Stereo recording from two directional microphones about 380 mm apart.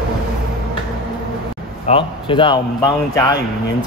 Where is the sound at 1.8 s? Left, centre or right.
Centre.